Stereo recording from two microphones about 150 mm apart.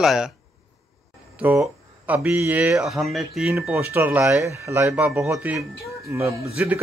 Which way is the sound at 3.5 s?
15° right (ahead or behind).